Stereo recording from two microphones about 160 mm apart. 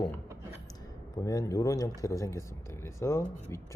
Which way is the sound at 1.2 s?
20° left (ahead or behind).